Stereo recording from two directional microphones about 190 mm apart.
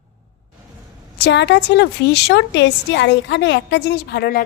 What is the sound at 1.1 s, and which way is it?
A woman's voice, 65° left (ahead or behind).